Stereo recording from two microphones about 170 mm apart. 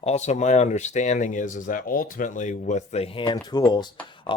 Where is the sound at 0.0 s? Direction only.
40° left (ahead or behind).